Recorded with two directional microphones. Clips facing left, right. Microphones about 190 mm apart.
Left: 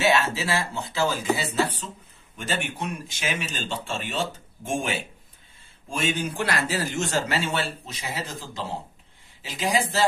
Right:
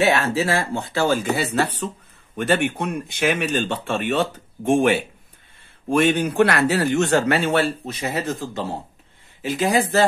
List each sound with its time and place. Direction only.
0.0 s speech: 60° right (ahead or behind)